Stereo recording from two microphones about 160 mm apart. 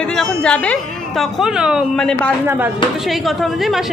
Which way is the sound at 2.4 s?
10° right (ahead or behind).